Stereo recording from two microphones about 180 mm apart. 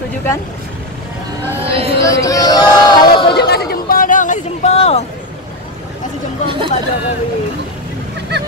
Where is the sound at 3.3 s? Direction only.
60° left (ahead or behind); by 5.0 s 35° left (ahead or behind).